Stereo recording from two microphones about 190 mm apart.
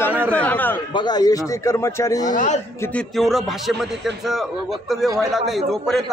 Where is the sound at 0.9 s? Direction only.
20° left (ahead or behind).